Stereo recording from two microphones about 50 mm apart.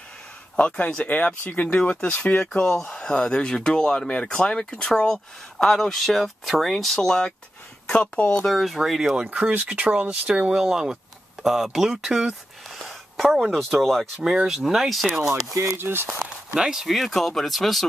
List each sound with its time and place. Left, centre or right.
0.6 s speech: left
2.1 s speech: left
2.4 s speech: centre
7.8 s a sound: left
8.5 s speech: centre
9.5 s speech: right
13.2 s speech: centre
14.2 s speech: centre
15.8 s speech: right
16.5 s speech: centre